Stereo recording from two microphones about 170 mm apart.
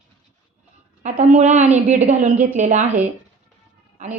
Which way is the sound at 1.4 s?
45° right (ahead or behind).